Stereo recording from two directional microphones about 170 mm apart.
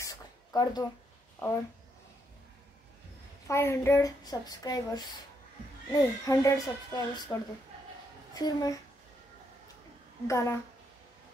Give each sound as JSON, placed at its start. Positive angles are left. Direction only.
{"t": 0.0, "sound": "a sound", "side_deg": 20}
{"t": 3.4, "sound": "speech", "side_deg": 15}
{"t": 10.2, "sound": "a woman's voice", "side_deg": 15}